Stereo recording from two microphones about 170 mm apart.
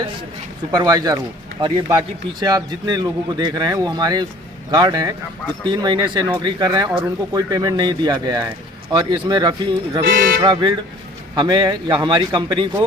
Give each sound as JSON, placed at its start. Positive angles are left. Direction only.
{"t": 0.8, "sound": "speech", "side_deg": -25}